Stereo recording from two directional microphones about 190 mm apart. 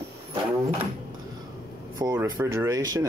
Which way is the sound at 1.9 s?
15° right (ahead or behind).